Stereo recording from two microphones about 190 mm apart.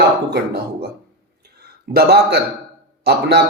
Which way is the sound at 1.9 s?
55° right (ahead or behind).